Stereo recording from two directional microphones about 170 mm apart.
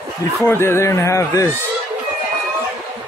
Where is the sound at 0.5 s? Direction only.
15° left (ahead or behind).